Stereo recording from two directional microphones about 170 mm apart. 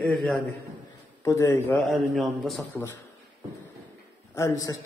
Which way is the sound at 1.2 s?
15° left (ahead or behind).